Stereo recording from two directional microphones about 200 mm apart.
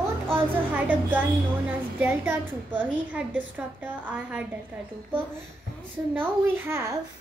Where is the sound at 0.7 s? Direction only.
10° right (ahead or behind).